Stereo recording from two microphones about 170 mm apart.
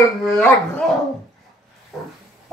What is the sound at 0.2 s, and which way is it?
Speech, 5° left (ahead or behind).